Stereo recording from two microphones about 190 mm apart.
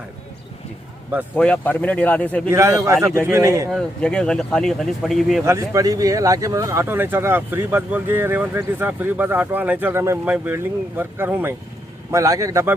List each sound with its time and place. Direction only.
1.4 s speech: 10° left (ahead or behind)
2.5 s speech: 15° right (ahead or behind)
3.7 s speech: 5° left (ahead or behind)
5.5 s speech: 15° right (ahead or behind)